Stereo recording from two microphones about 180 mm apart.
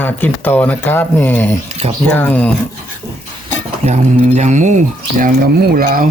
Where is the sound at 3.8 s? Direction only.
40° right (ahead or behind).